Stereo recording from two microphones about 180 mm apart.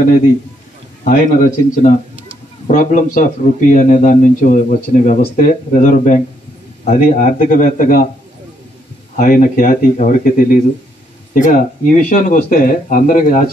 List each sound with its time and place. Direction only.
1.0 s a man's voice: 45° left (ahead or behind)
9.1 s a man's voice: 50° left (ahead or behind)